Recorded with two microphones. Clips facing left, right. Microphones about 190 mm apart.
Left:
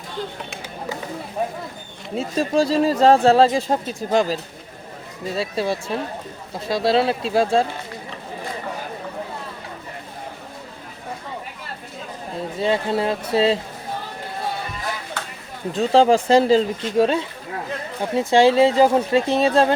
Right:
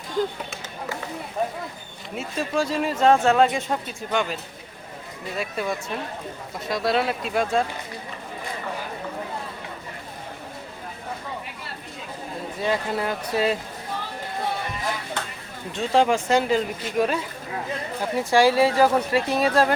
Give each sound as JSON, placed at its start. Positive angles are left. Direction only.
{"t": 2.1, "sound": "speech", "side_deg": 35}
{"t": 12.5, "sound": "speech", "side_deg": 25}
{"t": 15.7, "sound": "speech", "side_deg": 35}